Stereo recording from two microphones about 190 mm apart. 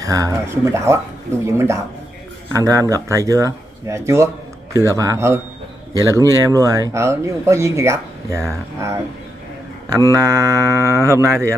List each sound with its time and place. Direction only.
0.0 s speech: 20° right (ahead or behind)
10.1 s speech: 20° right (ahead or behind)